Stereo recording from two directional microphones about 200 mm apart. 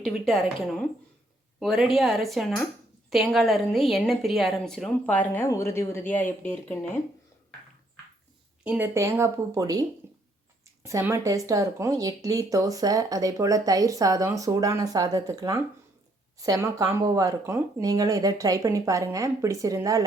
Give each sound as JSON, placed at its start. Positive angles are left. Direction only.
{"t": 1.5, "sound": "a woman's voice", "side_deg": 0}
{"t": 8.6, "sound": "speech", "side_deg": -10}
{"t": 10.8, "sound": "speech", "side_deg": -15}